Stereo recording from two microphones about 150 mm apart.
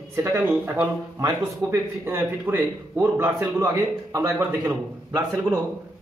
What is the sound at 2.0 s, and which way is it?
A man's voice, 15° right (ahead or behind).